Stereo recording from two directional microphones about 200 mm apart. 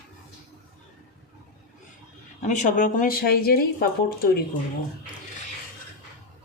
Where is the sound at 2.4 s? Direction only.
40° left (ahead or behind).